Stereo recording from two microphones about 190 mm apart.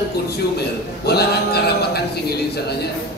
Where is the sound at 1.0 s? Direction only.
60° left (ahead or behind).